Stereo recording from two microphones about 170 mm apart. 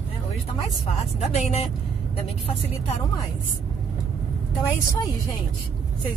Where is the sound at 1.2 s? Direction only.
40° left (ahead or behind).